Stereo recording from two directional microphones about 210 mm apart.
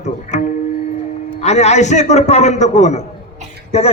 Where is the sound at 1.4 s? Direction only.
30° left (ahead or behind).